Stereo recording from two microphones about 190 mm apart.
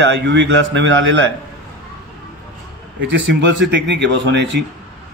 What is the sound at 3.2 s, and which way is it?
A man's voice, 70° right (ahead or behind).